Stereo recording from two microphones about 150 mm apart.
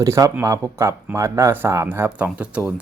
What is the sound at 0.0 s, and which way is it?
Speech, 20° right (ahead or behind).